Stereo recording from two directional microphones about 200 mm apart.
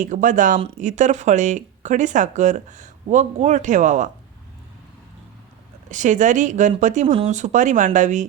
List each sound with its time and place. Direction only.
0.0 s speech: 40° right (ahead or behind)
5.9 s speech: 40° right (ahead or behind)